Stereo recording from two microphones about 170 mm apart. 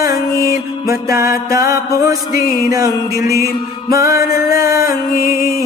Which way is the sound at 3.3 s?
60° left (ahead or behind).